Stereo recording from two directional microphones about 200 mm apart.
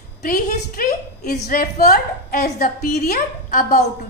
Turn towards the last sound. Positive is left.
turn(degrees=45)  # may be behind; listen again after turning